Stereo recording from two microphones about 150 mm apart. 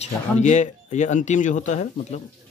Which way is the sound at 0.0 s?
50° left (ahead or behind).